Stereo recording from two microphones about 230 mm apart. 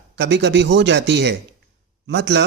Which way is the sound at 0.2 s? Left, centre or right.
Right.